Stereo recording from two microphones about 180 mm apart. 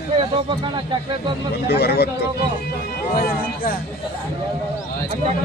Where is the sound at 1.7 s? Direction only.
65° left (ahead or behind).